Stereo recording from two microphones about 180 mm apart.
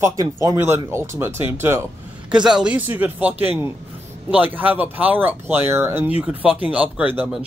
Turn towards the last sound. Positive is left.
turn(degrees=-10)  # may be behind; listen again after turning